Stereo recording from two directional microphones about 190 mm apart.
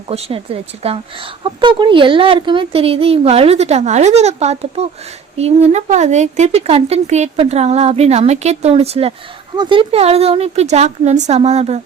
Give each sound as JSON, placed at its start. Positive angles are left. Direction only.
{"t": 0.1, "sound": "speech", "side_deg": -30}